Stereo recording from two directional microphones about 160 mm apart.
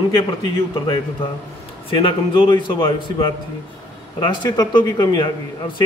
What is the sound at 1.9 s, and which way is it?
A man's voice, 35° left (ahead or behind).